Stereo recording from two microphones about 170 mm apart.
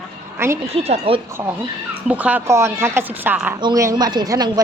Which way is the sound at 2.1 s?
10° right (ahead or behind).